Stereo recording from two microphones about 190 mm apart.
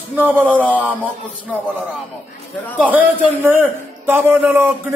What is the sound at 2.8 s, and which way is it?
A man's voice, 10° right (ahead or behind).